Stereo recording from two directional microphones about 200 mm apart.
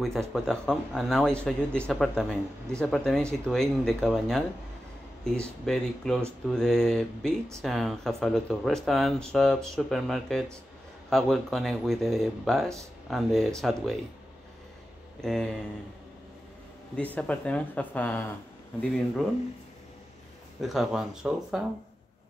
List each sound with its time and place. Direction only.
0.0 s speech: centre (ahead or behind)
15.1 s speech: 5° left (ahead or behind)
16.9 s speech: 5° left (ahead or behind)
20.6 s speech: centre (ahead or behind)